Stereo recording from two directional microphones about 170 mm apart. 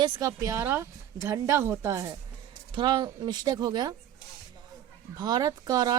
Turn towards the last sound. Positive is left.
turn(degrees=-25)  # may be behind; listen again after turning